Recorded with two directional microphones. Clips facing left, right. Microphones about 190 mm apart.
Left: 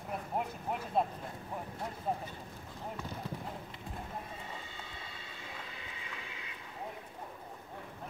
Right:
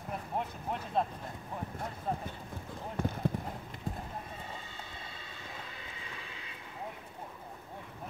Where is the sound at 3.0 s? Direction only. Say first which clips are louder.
Right 13 dB; 50° right (ahead or behind).